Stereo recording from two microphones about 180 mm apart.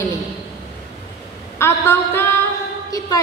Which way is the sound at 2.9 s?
20° left (ahead or behind).